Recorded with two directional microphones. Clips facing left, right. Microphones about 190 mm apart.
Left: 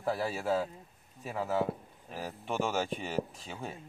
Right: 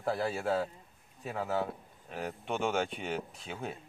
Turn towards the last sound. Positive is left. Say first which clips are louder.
# right 1 dB
turn(degrees=0)  # may be behind; listen again after turning